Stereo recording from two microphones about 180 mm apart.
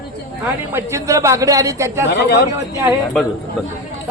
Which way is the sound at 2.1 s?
65° left (ahead or behind).